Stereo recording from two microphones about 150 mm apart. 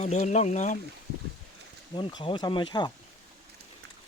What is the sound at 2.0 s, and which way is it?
Speech, 35° left (ahead or behind).